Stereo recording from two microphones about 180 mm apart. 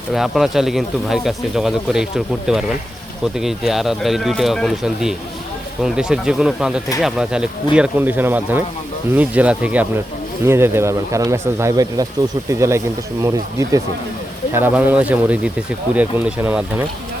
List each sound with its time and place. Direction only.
0.1 s speech: centre (ahead or behind)